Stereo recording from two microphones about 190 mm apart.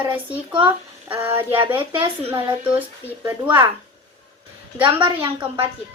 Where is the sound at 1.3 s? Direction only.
25° right (ahead or behind).